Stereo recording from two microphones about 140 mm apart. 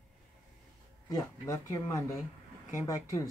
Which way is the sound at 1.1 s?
20° left (ahead or behind).